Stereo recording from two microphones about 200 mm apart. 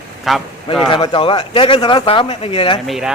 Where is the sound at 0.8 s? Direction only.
25° left (ahead or behind).